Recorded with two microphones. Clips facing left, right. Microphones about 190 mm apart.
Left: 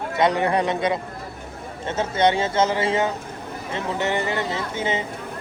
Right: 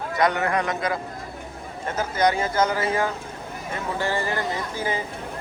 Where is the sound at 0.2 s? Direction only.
25° left (ahead or behind).